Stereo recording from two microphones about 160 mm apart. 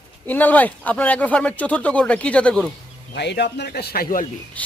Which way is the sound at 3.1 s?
90° left.